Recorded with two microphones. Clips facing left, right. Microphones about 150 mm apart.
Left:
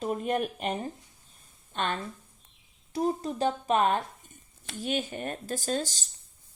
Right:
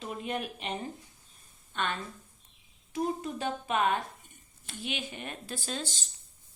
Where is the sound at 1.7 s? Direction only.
45° left (ahead or behind).